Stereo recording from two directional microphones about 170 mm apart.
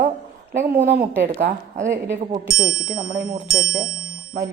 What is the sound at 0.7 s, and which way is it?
Speech, 90° right.